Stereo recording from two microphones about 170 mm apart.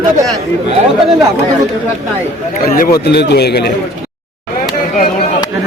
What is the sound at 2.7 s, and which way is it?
Speech, 55° left (ahead or behind).